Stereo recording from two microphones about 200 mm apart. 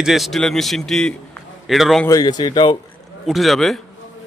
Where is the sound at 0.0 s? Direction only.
Centre (ahead or behind).